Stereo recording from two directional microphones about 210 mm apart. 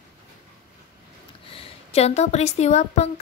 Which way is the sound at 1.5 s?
30° left (ahead or behind).